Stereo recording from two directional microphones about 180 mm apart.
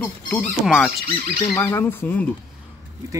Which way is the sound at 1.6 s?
15° left (ahead or behind).